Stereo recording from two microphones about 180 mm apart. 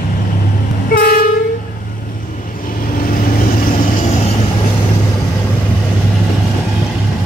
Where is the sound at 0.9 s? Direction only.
55° left (ahead or behind).